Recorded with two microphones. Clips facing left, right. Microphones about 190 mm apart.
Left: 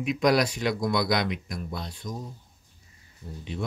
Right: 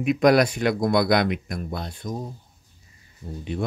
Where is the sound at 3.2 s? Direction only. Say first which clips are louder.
Right 5 dB; 65° right (ahead or behind).